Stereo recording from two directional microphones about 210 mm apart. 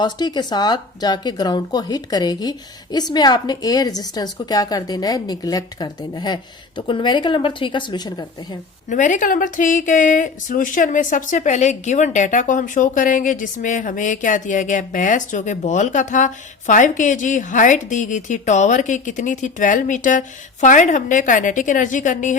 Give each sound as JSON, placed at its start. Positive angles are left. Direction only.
{"t": 0.0, "sound": "speech", "side_deg": 20}
{"t": 8.9, "sound": "speech", "side_deg": 35}